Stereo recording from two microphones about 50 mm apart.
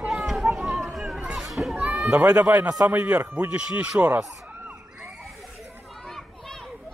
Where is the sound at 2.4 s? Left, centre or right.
Right.